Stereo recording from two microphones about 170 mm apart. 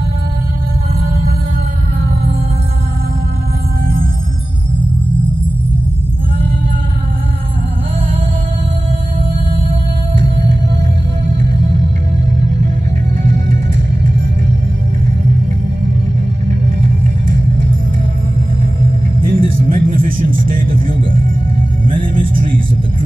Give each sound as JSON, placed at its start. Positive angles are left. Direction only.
{"t": 3.8, "sound": "music", "side_deg": -55}
{"t": 12.4, "sound": "music", "side_deg": -45}
{"t": 16.4, "sound": "music", "side_deg": -45}
{"t": 19.2, "sound": "music", "side_deg": -55}
{"t": 22.1, "sound": "music", "side_deg": -55}